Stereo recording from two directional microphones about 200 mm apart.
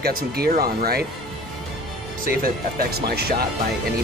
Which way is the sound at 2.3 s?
50° right (ahead or behind).